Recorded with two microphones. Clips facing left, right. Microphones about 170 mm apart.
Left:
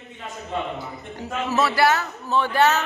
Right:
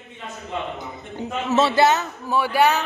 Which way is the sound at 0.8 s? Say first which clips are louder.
Right 2 dB; 25° right (ahead or behind).